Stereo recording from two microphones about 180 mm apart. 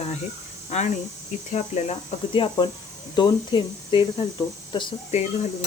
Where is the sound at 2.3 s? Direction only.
25° left (ahead or behind).